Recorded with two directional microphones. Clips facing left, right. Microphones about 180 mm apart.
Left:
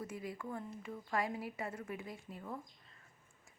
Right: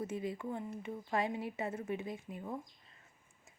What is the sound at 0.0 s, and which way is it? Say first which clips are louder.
A woman's voice: right 5 dB; 25° right (ahead or behind).